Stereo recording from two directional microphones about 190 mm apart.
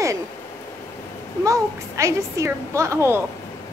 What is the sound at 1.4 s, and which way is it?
A woman's voice, 15° right (ahead or behind).